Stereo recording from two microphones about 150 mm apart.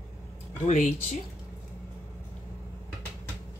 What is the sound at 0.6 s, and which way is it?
Speech, 55° left (ahead or behind).